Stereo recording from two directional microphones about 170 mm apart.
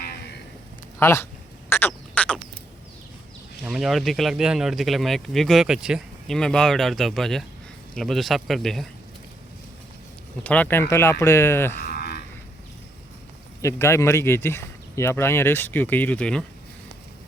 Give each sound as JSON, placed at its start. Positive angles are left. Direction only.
{"t": 0.9, "sound": "speech", "side_deg": 15}
{"t": 1.9, "sound": "a sound", "side_deg": 5}
{"t": 3.6, "sound": "speech", "side_deg": 0}
{"t": 10.4, "sound": "speech", "side_deg": 10}
{"t": 11.8, "sound": "cattle", "side_deg": 65}
{"t": 13.6, "sound": "speech", "side_deg": 15}